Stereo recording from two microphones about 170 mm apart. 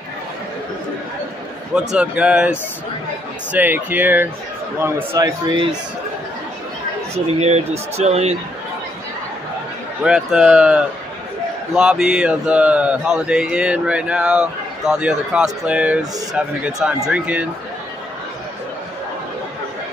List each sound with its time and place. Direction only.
1.8 s speech: 5° right (ahead or behind)
5.5 s a man's voice: 30° right (ahead or behind)
7.3 s speech: 40° right (ahead or behind)
10.0 s speech: 5° right (ahead or behind)